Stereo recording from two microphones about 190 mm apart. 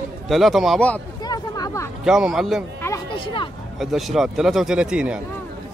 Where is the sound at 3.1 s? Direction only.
25° left (ahead or behind).